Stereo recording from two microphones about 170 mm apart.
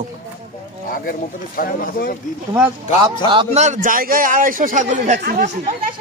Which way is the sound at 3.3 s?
35° right (ahead or behind).